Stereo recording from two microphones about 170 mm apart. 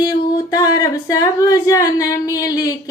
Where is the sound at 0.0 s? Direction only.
25° left (ahead or behind).